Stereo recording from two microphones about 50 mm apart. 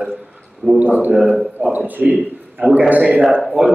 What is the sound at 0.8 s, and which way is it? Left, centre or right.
A man's voice, right.